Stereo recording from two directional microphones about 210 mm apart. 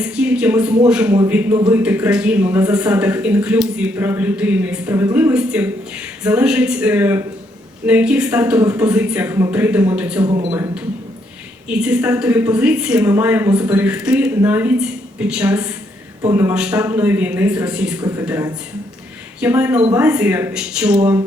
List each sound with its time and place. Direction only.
0.0 s a man's voice: 5° right (ahead or behind)
10.2 s speech: 25° right (ahead or behind)
10.5 s a man's voice: 10° right (ahead or behind)